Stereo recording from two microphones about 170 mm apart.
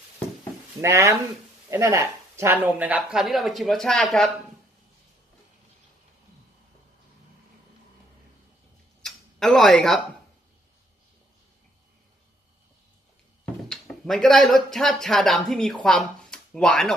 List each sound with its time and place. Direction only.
0.7 s speech: 15° right (ahead or behind); by 4.3 s centre (ahead or behind)
9.0 s tick-tock: centre (ahead or behind)
13.7 s speech: 5° left (ahead or behind)